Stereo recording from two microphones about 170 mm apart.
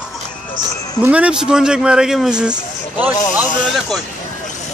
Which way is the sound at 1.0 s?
5° right (ahead or behind).